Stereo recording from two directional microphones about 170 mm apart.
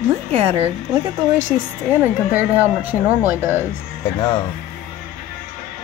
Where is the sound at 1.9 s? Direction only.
10° right (ahead or behind).